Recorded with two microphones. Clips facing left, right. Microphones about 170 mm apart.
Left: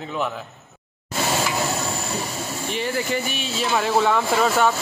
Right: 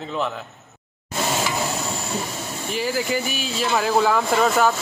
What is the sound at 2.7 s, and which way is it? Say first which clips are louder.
A man's voice: right 2 dB; centre (ahead or behind).